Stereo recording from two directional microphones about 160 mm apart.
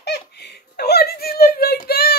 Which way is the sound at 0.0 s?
90° left.